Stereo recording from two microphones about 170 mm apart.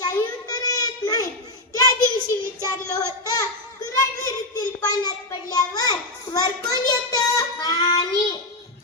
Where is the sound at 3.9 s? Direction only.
20° left (ahead or behind).